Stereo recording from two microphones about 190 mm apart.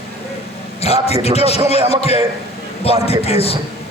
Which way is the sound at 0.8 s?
30° left (ahead or behind).